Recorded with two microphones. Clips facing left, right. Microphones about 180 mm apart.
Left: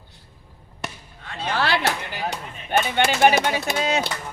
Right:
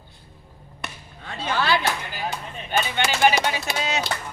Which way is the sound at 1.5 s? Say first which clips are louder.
Even; 70° left (ahead or behind).